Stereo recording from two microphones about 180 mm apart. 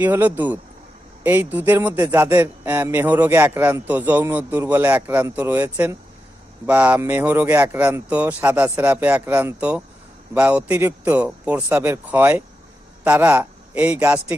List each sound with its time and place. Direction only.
0.0 s a man's voice: 10° right (ahead or behind)